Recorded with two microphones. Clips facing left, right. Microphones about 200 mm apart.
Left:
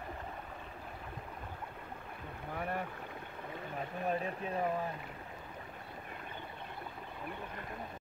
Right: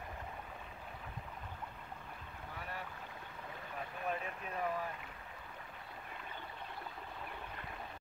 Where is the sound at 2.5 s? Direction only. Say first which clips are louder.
Left 9 dB; 55° left (ahead or behind).